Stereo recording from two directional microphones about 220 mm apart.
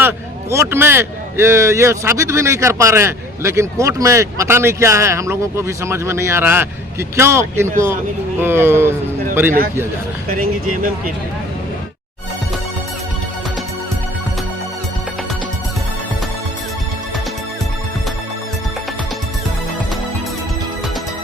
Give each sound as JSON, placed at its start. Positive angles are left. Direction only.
{"t": 0.5, "sound": "a man's voice", "side_deg": -10}
{"t": 10.2, "sound": "speech", "side_deg": -40}